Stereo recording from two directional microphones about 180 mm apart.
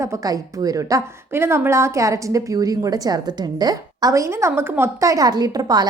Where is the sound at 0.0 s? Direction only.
20° right (ahead or behind).